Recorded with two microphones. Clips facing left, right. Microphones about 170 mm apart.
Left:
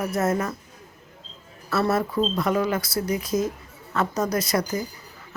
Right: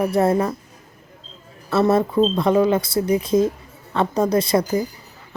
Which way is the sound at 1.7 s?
25° right (ahead or behind).